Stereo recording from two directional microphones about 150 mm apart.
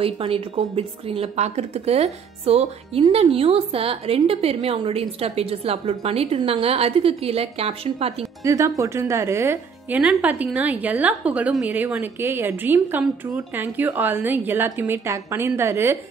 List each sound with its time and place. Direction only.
0.0 s speech: 40° right (ahead or behind)
8.5 s a woman's voice: 20° right (ahead or behind)